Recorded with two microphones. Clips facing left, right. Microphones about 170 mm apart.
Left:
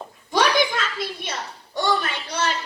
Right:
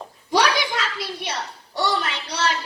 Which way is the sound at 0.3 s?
50° left (ahead or behind).